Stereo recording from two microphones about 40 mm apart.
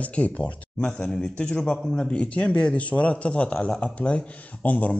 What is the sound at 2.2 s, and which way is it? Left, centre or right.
Speech, left.